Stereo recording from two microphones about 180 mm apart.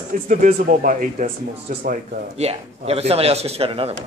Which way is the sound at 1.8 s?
35° right (ahead or behind).